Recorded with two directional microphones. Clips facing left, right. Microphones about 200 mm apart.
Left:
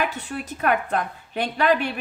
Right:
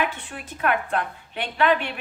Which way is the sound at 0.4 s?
40° left (ahead or behind).